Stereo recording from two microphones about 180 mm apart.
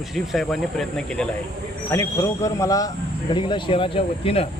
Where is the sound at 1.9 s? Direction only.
15° left (ahead or behind).